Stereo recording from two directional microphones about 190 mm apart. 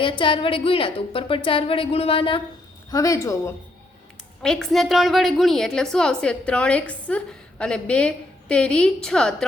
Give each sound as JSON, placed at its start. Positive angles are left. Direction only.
{"t": 0.0, "sound": "a woman's voice", "side_deg": 25}
{"t": 2.9, "sound": "a woman's voice", "side_deg": 15}
{"t": 4.4, "sound": "a woman's voice", "side_deg": 0}